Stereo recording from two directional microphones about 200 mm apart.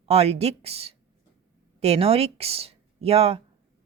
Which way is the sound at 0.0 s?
30° right (ahead or behind).